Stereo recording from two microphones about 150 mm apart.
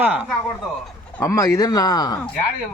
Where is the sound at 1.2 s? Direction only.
20° left (ahead or behind).